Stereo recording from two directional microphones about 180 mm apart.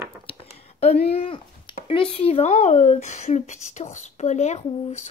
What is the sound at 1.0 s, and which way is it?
Speech, 35° left (ahead or behind).